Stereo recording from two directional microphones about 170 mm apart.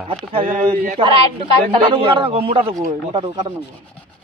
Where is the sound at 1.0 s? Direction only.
30° right (ahead or behind).